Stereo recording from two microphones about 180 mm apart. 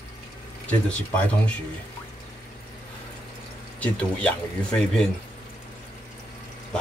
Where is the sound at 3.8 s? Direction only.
5° left (ahead or behind).